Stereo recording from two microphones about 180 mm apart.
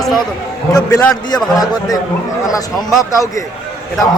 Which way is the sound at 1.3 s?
20° left (ahead or behind).